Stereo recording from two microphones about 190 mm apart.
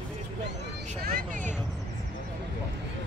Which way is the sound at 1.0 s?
50° right (ahead or behind).